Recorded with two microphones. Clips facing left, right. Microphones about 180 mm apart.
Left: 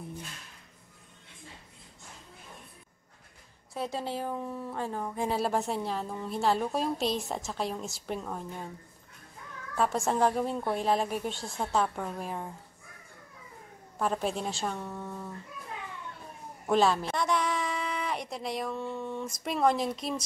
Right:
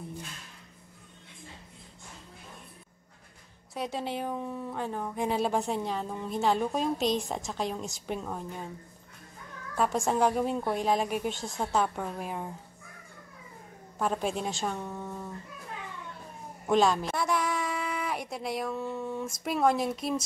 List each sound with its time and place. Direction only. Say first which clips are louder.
3.7 s speech: even; centre (ahead or behind)
9.8 s speech: right 1 dB; centre (ahead or behind)
13.9 s speech: even; centre (ahead or behind)
16.6 s speech: right 1 dB; centre (ahead or behind)